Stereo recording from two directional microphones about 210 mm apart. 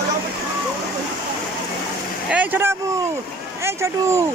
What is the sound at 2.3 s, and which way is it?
Speech, 10° right (ahead or behind).